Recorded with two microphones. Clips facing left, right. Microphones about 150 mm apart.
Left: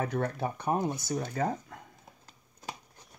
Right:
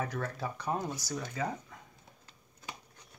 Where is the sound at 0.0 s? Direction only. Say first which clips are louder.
Left 5 dB; 55° left (ahead or behind).